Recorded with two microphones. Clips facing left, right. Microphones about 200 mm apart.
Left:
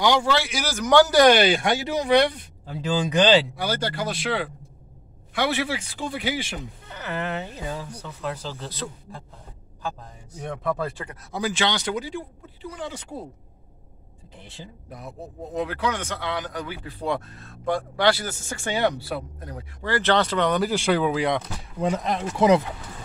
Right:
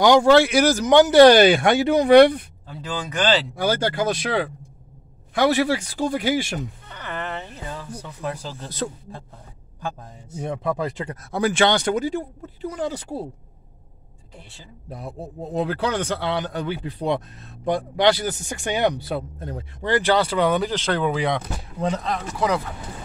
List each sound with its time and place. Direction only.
0.0 s speech: 45° right (ahead or behind)
0.8 s speech: 20° right (ahead or behind)
1.4 s speech: 55° right (ahead or behind)
2.6 s speech: 15° left (ahead or behind)
3.5 s speech: 50° right (ahead or behind)
6.9 s a sound: 5° left (ahead or behind)
8.0 s speech: 10° right (ahead or behind)
10.4 s speech: 15° right (ahead or behind)
11.3 s speech: 55° right (ahead or behind); by 13.2 s 35° right (ahead or behind)
14.9 s speech: 30° right (ahead or behind); by 20.6 s 5° right (ahead or behind)
20.6 s speech: 10° left (ahead or behind)
21.8 s speech: 15° left (ahead or behind)